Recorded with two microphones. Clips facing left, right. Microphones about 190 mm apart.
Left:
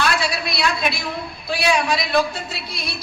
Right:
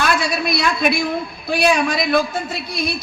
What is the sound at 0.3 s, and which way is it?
A woman's voice, 50° right (ahead or behind).